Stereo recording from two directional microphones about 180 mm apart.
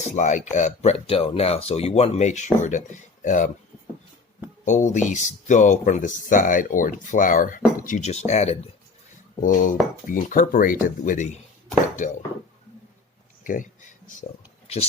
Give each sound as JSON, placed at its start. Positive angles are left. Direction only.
{"t": 0.0, "sound": "speech", "side_deg": 40}
{"t": 4.6, "sound": "speech", "side_deg": 45}
{"t": 13.4, "sound": "speech", "side_deg": 50}